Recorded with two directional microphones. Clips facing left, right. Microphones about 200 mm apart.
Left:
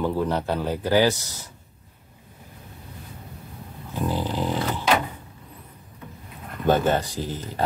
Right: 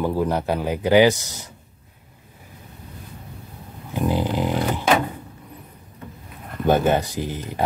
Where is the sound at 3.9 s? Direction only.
15° right (ahead or behind).